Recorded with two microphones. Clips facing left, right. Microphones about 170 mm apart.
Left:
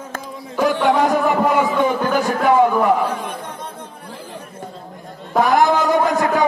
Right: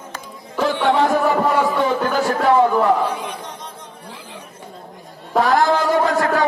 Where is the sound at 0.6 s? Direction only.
15° left (ahead or behind).